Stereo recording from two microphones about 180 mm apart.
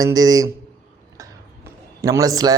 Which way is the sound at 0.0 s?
20° right (ahead or behind).